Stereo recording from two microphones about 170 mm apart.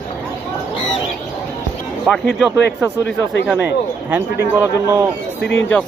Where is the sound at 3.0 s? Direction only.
90° left.